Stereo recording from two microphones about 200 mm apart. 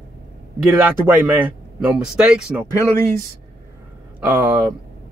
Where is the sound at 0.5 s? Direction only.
10° right (ahead or behind).